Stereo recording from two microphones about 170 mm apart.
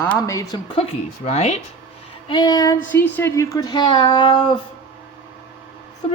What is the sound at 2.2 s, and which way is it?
Speech, 25° left (ahead or behind).